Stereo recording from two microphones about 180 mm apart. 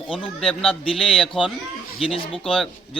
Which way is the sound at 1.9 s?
30° left (ahead or behind).